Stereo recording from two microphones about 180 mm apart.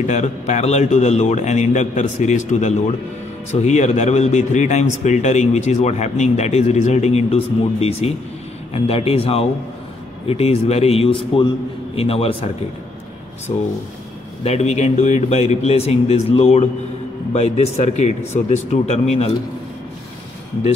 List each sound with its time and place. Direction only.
0.0 s speech: 40° left (ahead or behind)
14.4 s speech: 35° left (ahead or behind)